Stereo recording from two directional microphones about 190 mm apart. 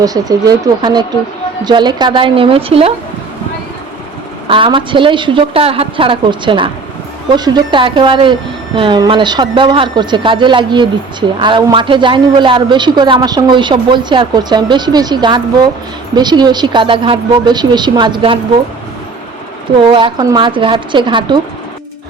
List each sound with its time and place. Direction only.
0.0 s a woman's voice: 20° right (ahead or behind)
4.4 s a woman's voice: 25° right (ahead or behind)
19.9 s a woman's voice: 25° right (ahead or behind)